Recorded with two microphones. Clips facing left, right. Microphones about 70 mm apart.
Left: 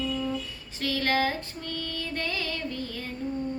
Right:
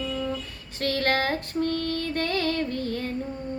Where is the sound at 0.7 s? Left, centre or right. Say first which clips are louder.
Right 2 dB; right.